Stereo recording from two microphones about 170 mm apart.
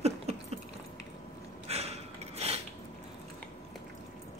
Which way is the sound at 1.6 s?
35° right (ahead or behind).